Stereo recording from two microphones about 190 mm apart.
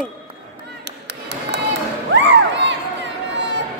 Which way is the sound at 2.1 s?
70° right (ahead or behind).